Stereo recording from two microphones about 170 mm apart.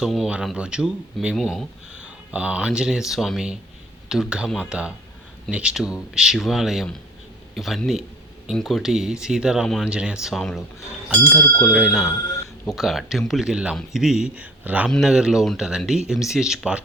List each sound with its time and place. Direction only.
0.0 s speech: centre (ahead or behind)